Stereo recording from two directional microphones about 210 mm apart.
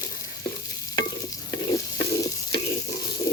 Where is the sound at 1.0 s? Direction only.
15° left (ahead or behind).